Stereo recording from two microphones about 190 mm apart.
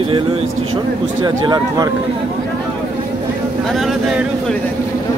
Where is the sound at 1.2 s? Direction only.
20° right (ahead or behind).